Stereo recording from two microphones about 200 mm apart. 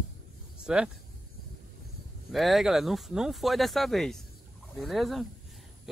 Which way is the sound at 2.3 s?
Centre (ahead or behind).